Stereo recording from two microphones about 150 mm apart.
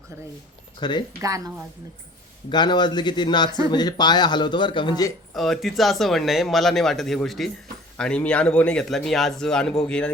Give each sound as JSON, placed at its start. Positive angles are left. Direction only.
{"t": 0.8, "sound": "speech", "side_deg": 30}
{"t": 1.2, "sound": "speech", "side_deg": -20}
{"t": 2.5, "sound": "speech", "side_deg": 30}
{"t": 5.3, "sound": "speech", "side_deg": 0}